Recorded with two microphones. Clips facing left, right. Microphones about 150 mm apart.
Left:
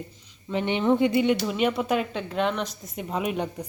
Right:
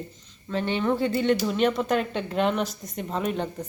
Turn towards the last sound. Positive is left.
turn(degrees=10)  # may be behind; listen again after turning